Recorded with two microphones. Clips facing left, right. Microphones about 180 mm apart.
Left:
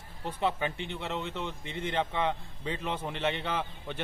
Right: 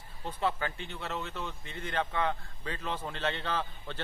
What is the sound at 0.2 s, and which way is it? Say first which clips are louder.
Speech: left 2 dB; 20° left (ahead or behind).